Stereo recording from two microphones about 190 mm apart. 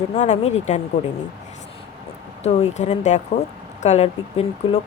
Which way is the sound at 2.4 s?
35° left (ahead or behind).